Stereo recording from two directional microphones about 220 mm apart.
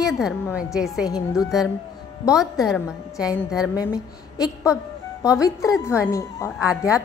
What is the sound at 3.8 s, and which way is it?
A woman's voice, 15° left (ahead or behind).